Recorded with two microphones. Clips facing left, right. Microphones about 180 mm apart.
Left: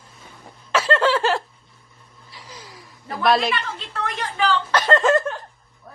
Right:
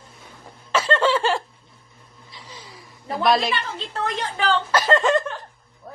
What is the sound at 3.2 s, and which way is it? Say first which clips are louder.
Speech: left 1 dB; centre (ahead or behind).